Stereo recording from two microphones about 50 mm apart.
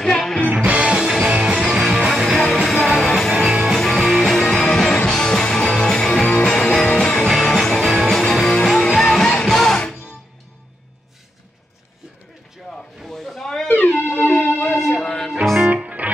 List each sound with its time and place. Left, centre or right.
0.0 s music: centre
0.7 s music: centre
2.3 s music: centre
3.3 s music: centre
3.6 s music: centre
7.2 s music: centre
12.6 s a sound: centre
13.7 s music: left
14.7 s music: centre
15.4 s music: centre
15.7 s music: right